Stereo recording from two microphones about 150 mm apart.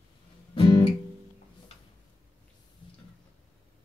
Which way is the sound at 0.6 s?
35° left (ahead or behind).